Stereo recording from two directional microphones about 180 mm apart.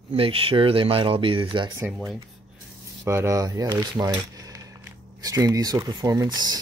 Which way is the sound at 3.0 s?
15° right (ahead or behind).